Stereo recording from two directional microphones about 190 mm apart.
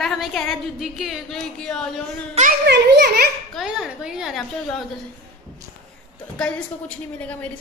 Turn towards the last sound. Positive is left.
turn(degrees=5)  # may be behind; listen again after turning